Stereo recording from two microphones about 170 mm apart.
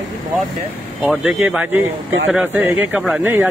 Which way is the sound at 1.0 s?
5° right (ahead or behind).